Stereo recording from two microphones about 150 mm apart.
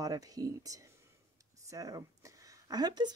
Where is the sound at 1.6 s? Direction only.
20° right (ahead or behind).